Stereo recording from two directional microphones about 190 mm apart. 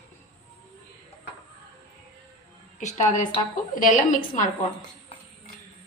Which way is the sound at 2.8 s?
40° left (ahead or behind).